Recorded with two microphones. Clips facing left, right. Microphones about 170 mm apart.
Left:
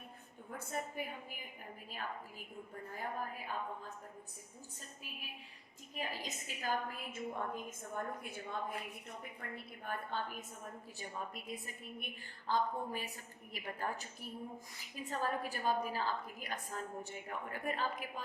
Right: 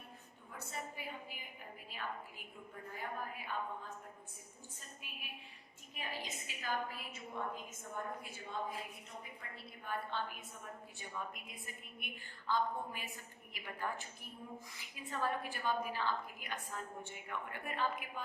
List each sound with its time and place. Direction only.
0.5 s a woman's voice: 50° left (ahead or behind)
2.9 s a woman's voice: 40° left (ahead or behind)
5.9 s a woman's voice: 40° left (ahead or behind)
11.4 s a woman's voice: 40° left (ahead or behind)